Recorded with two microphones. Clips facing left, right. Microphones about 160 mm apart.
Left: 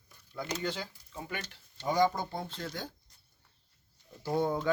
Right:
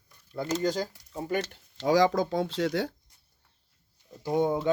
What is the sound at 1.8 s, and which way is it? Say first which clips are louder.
Speech: right 6 dB; 90° right.